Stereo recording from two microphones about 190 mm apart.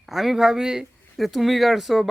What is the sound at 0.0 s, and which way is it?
Speech, centre (ahead or behind).